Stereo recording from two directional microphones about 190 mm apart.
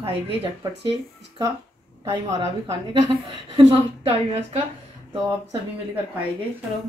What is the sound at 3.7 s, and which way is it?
Speech, 30° right (ahead or behind).